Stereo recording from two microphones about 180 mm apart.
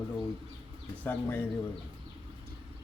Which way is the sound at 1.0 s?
10° left (ahead or behind).